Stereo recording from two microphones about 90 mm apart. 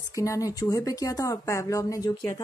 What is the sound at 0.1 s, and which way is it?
A woman's voice, 35° left (ahead or behind).